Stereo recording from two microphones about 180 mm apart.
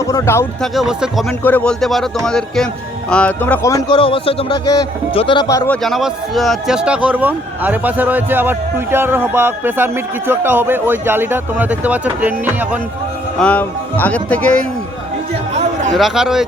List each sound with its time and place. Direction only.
0.0 s speech: 15° left (ahead or behind)
0.6 s a man's voice: centre (ahead or behind); by 5.7 s 20° left (ahead or behind)
5.7 s speech: centre (ahead or behind)
13.4 s speech: 10° left (ahead or behind)
16.0 s speech: centre (ahead or behind)